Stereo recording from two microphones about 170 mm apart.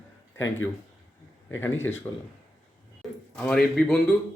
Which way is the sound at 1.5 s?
15° left (ahead or behind).